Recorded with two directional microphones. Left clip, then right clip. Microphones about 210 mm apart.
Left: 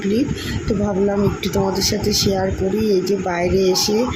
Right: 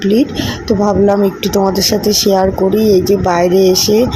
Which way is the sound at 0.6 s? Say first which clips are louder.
Right 9 dB; 25° right (ahead or behind).